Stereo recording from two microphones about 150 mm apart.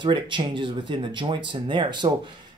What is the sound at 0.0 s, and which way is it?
Speech, 35° right (ahead or behind).